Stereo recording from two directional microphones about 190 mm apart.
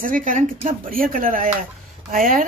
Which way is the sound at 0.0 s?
45° right (ahead or behind).